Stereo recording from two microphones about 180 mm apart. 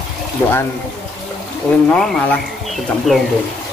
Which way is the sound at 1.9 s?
5° left (ahead or behind).